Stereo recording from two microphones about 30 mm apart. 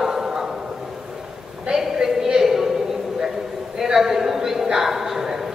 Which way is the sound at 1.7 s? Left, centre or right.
Centre.